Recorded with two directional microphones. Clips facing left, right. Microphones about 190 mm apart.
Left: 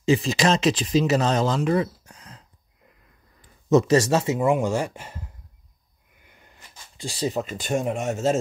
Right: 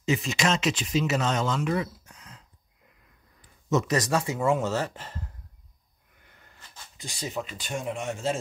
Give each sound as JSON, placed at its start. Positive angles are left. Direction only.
{"t": 0.0, "sound": "speech", "side_deg": 30}
{"t": 3.7, "sound": "speech", "side_deg": 30}
{"t": 6.2, "sound": "wheeze", "side_deg": 15}
{"t": 7.0, "sound": "speech", "side_deg": 30}